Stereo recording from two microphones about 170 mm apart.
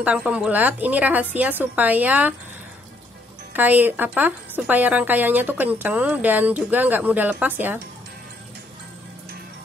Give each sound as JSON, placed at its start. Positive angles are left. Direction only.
{"t": 0.0, "sound": "a woman's voice", "side_deg": -5}
{"t": 3.5, "sound": "a woman's voice", "side_deg": -10}